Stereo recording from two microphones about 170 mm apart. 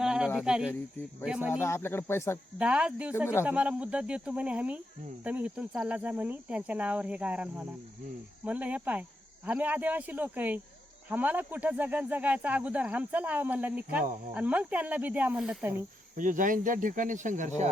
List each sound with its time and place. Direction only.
0.0 s cricket: 5° right (ahead or behind)
0.3 s speech: 5° right (ahead or behind)
1.6 s speech: 15° left (ahead or behind)
2.6 s speech: 5° right (ahead or behind)
16.1 s speech: 50° right (ahead or behind)